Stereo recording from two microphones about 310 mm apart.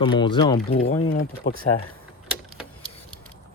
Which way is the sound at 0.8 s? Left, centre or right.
Left.